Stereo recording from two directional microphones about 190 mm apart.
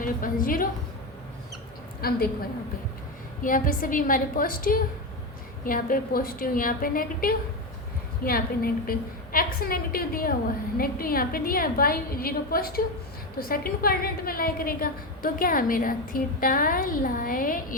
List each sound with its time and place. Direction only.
0.0 s a woman's voice: 45° left (ahead or behind)
2.0 s a woman's voice: 55° left (ahead or behind)
3.4 s a woman's voice: 45° left (ahead or behind)